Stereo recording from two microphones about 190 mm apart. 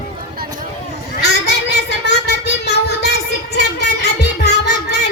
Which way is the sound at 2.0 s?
65° left (ahead or behind).